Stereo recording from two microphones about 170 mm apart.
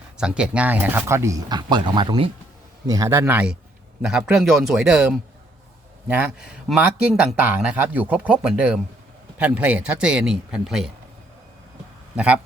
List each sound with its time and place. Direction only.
0.2 s speech: 5° right (ahead or behind)
12.1 s a man's voice: 5° right (ahead or behind)